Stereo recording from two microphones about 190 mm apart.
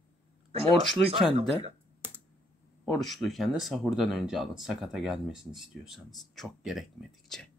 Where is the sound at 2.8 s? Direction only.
Centre (ahead or behind).